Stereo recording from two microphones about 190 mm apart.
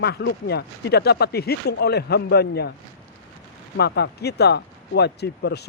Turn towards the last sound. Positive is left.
turn(degrees=60)  # may be behind; listen again after turning